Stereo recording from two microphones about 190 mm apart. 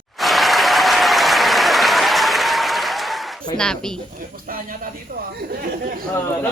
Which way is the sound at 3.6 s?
5° left (ahead or behind).